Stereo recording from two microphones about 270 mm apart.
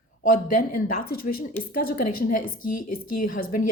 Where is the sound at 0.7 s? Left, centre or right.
Left.